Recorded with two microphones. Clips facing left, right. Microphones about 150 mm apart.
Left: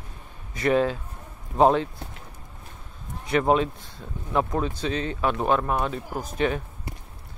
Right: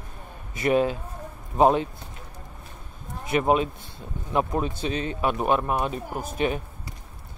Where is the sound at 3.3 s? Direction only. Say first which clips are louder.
Left 1 dB; 15° right (ahead or behind).